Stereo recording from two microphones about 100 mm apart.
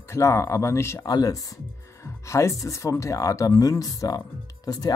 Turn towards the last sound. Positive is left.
turn(degrees=40)  # may be behind; listen again after turning